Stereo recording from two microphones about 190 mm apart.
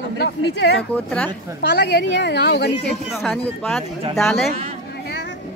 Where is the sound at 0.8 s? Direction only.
5° left (ahead or behind).